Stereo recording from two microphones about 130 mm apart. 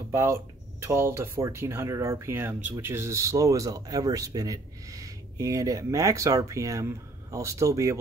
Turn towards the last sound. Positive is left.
turn(degrees=-25)  # may be behind; listen again after turning